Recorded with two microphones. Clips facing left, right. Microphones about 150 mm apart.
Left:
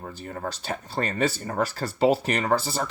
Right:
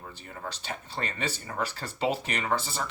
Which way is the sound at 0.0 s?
45° left (ahead or behind).